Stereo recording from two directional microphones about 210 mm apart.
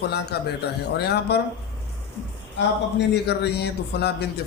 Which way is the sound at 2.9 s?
55° left (ahead or behind).